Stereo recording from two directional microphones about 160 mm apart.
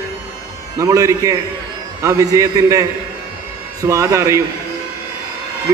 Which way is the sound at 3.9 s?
20° right (ahead or behind).